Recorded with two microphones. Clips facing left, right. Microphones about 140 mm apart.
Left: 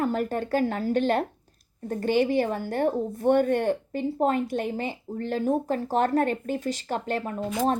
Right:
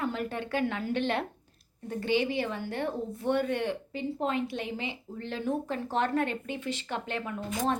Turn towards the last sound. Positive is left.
turn(degrees=25)  # may be behind; listen again after turning